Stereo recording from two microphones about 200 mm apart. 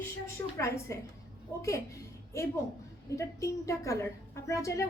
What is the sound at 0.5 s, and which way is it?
A woman's voice, 15° left (ahead or behind).